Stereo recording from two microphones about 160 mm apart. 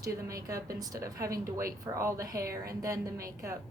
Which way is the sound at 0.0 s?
20° right (ahead or behind).